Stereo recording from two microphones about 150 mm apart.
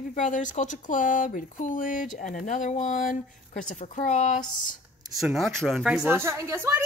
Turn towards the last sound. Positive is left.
turn(degrees=-20)  # may be behind; listen again after turning